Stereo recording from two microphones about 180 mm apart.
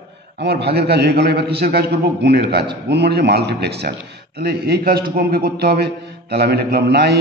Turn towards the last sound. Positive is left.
turn(degrees=-65)  # may be behind; listen again after turning